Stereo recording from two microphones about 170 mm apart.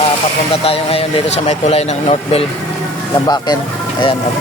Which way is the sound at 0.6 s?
35° left (ahead or behind).